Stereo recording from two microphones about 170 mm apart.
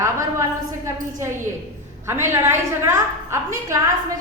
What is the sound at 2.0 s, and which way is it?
A woman's voice, 15° right (ahead or behind).